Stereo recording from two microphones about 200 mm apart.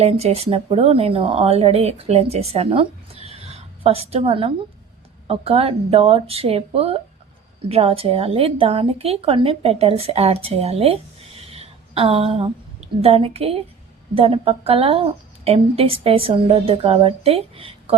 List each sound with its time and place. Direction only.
0.0 s a woman's voice: 30° right (ahead or behind)
11.5 s a sound: 30° right (ahead or behind)
13.0 s a woman's voice: 30° right (ahead or behind)